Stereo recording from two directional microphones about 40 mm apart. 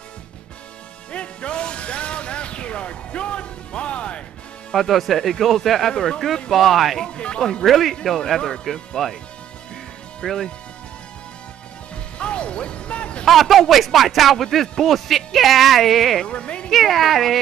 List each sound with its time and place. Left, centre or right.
1.1 s music: left
4.7 s speech: centre
6.5 s speech: centre
7.2 s speech: left
7.6 s speech: centre
10.2 s speech: centre
12.2 s music: left
13.2 s speech: centre
16.3 s speech: left
16.7 s speech: centre